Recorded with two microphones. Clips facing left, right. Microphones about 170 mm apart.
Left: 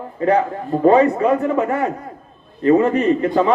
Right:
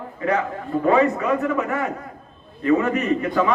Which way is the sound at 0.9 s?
35° left (ahead or behind).